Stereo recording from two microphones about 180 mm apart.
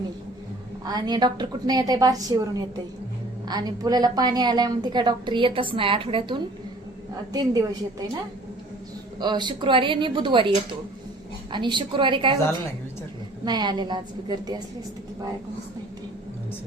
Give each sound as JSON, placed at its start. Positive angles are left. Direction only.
{"t": 0.9, "sound": "a woman's voice", "side_deg": -20}
{"t": 7.5, "sound": "a woman's voice", "side_deg": -20}
{"t": 9.2, "sound": "a woman's voice", "side_deg": -25}
{"t": 13.4, "sound": "a woman's voice", "side_deg": -25}